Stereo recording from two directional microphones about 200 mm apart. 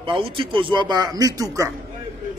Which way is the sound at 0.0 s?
25° right (ahead or behind).